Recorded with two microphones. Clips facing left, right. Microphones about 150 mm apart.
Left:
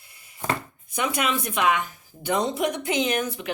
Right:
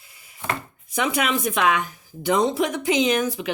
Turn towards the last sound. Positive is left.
turn(degrees=-90)